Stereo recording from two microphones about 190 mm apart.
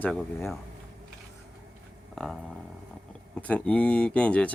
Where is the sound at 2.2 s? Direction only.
Centre (ahead or behind).